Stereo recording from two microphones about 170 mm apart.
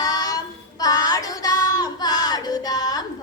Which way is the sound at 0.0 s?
20° left (ahead or behind).